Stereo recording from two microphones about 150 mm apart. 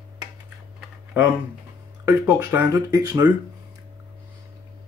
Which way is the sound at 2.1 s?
10° right (ahead or behind).